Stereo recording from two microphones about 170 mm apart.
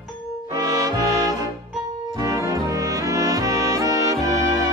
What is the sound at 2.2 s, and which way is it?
Brass instrument, 20° right (ahead or behind).